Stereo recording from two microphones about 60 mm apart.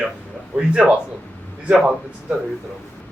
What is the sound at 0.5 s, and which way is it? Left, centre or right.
Speech, centre.